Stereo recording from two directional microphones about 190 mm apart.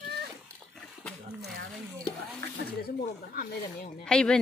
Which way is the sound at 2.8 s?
50° left (ahead or behind).